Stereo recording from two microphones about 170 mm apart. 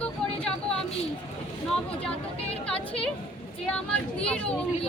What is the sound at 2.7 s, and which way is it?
Speech, 35° left (ahead or behind).